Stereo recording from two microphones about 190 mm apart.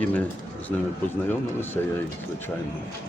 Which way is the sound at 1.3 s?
10° left (ahead or behind).